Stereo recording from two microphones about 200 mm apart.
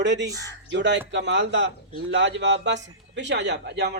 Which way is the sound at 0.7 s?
60° right (ahead or behind).